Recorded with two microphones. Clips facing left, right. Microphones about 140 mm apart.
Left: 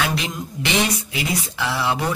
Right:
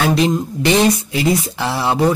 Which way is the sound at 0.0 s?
35° right (ahead or behind).